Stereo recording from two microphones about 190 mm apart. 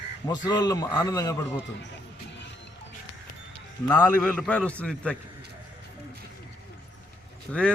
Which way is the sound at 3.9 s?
5° left (ahead or behind).